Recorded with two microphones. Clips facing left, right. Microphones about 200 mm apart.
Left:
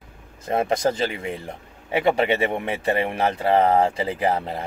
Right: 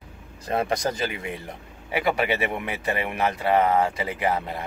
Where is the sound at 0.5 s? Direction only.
25° left (ahead or behind).